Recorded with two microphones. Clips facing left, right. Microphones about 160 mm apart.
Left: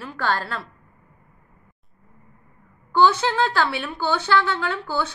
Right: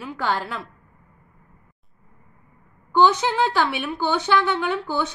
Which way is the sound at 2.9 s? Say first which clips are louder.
Even; 15° right (ahead or behind).